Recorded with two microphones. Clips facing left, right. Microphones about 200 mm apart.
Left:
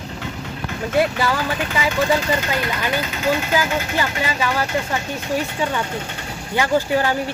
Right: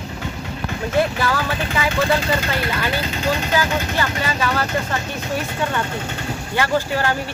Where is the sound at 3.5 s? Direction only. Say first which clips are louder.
Even; 15° left (ahead or behind).